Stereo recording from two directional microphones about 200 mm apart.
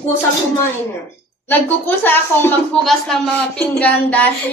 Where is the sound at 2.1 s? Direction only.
5° left (ahead or behind).